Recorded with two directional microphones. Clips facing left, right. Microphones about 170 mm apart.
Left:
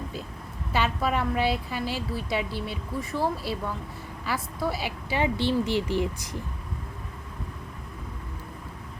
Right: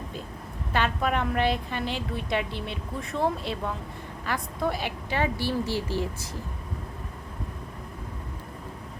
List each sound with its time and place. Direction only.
0.7 s a woman's voice: 5° left (ahead or behind)